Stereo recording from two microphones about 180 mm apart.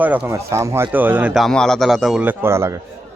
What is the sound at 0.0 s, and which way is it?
Speech, 10° right (ahead or behind).